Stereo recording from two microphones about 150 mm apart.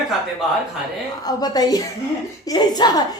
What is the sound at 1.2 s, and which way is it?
Speech, 25° left (ahead or behind).